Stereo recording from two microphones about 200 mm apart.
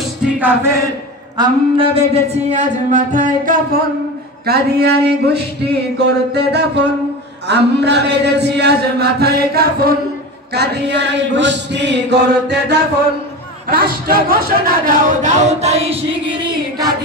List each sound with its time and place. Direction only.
1.3 s speech: 25° right (ahead or behind); by 3.5 s 40° right (ahead or behind)
4.5 s a sound: 55° right (ahead or behind)
5.9 s chant: 55° right (ahead or behind)
13.7 s speech: 45° right (ahead or behind); by 16.9 s 20° right (ahead or behind)